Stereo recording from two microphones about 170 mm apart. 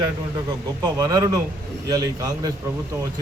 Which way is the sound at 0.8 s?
20° right (ahead or behind).